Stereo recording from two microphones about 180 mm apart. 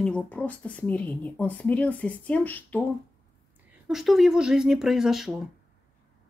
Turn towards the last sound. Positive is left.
turn(degrees=0)  # may be behind; listen again after turning